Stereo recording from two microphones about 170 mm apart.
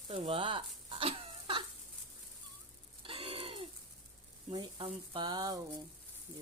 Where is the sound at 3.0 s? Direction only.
30° right (ahead or behind).